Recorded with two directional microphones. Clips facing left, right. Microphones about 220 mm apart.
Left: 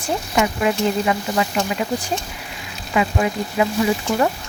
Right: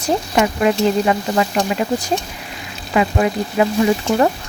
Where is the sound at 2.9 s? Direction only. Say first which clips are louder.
Right 3 dB; 45° right (ahead or behind).